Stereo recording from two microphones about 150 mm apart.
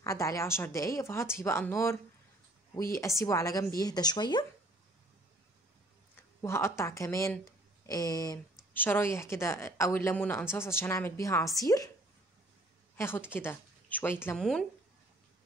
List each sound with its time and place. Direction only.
0.0 s speech: 20° left (ahead or behind)
3.2 s speech: 20° left (ahead or behind)
6.4 s speech: 15° left (ahead or behind)
8.7 s a woman's voice: 15° left (ahead or behind)
12.9 s a woman's voice: 15° left (ahead or behind)
14.3 s speech: 5° left (ahead or behind)